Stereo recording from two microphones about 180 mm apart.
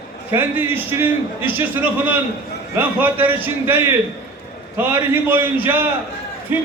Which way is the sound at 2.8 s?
10° right (ahead or behind).